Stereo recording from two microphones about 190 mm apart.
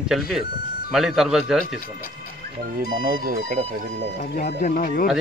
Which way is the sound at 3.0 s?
45° right (ahead or behind).